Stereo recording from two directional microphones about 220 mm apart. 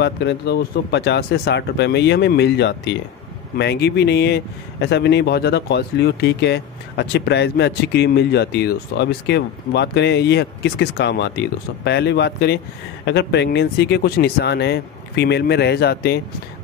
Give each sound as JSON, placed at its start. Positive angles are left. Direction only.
{"t": 0.0, "sound": "speech", "side_deg": 50}